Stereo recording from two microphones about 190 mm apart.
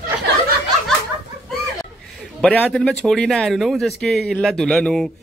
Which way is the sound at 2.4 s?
5° left (ahead or behind).